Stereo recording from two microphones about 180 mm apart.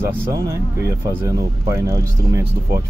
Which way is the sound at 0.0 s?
10° right (ahead or behind).